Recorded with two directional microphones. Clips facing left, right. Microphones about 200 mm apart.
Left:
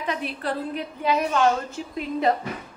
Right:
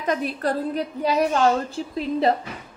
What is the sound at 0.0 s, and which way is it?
A woman's voice, 45° right (ahead or behind).